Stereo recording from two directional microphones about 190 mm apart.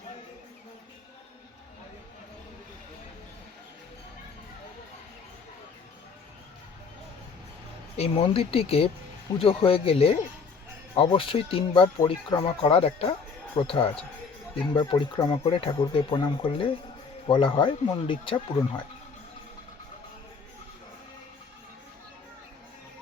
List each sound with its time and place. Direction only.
7.9 s speech: 30° left (ahead or behind)